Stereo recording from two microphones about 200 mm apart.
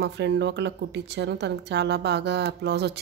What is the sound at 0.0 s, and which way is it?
A woman's voice, 55° right (ahead or behind).